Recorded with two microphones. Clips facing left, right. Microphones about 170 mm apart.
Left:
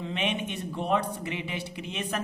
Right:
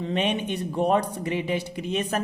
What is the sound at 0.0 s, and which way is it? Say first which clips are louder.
Speech: right 5 dB; 40° right (ahead or behind).